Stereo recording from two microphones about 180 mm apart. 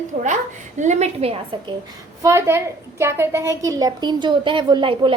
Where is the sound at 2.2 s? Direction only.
15° right (ahead or behind).